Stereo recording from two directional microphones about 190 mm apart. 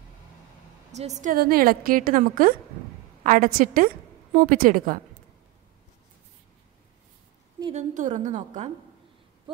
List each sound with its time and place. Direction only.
0.9 s a woman's voice: 35° right (ahead or behind)
7.7 s a woman's voice: 40° right (ahead or behind)